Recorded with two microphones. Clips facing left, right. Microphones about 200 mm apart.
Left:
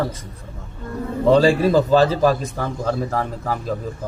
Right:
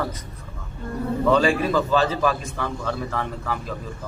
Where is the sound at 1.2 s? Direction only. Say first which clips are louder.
Left 5 dB; 35° left (ahead or behind).